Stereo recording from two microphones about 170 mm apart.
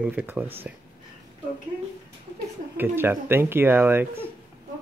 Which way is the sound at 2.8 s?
10° right (ahead or behind).